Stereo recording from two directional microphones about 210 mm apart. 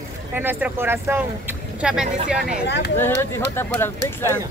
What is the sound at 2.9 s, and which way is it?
Speech, 10° left (ahead or behind).